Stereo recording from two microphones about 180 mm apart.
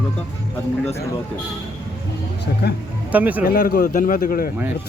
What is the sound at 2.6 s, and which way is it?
Speech, 65° left (ahead or behind).